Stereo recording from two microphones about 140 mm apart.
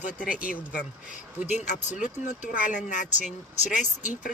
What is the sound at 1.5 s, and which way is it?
Speech, 60° left (ahead or behind).